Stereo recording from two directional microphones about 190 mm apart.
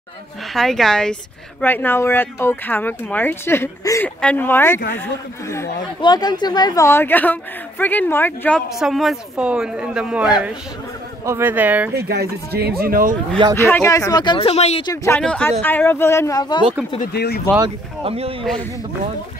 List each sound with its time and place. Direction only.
0.6 s speech: centre (ahead or behind)
5.9 s a woman's voice: 20° left (ahead or behind); by 11.9 s 10° right (ahead or behind)
11.9 s speech: 55° right (ahead or behind)
13.6 s a woman's voice: 10° left (ahead or behind); by 14.9 s 35° left (ahead or behind)
14.9 s speech: 10° left (ahead or behind)
17.0 s speech: 60° left (ahead or behind)
18.0 s speech: 30° right (ahead or behind)